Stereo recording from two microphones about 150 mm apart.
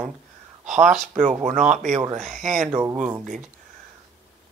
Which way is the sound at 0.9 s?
55° right (ahead or behind).